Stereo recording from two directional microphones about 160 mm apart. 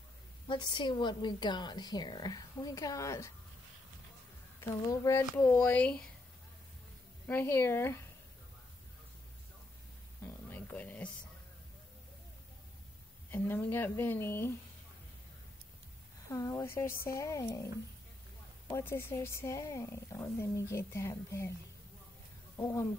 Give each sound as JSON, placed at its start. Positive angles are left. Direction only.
{"t": 0.5, "sound": "a woman's voice", "side_deg": 30}
{"t": 4.6, "sound": "speech", "side_deg": 15}
{"t": 7.2, "sound": "speech", "side_deg": 15}
{"t": 10.2, "sound": "a sound", "side_deg": 10}
{"t": 13.3, "sound": "speech", "side_deg": 10}
{"t": 16.3, "sound": "a woman's voice", "side_deg": 20}
{"t": 18.7, "sound": "speech", "side_deg": 15}
{"t": 22.6, "sound": "a woman's voice", "side_deg": 20}